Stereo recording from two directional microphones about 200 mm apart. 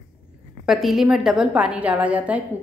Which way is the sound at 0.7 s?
Centre (ahead or behind).